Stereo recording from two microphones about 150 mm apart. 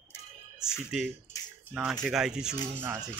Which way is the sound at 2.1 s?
5° right (ahead or behind).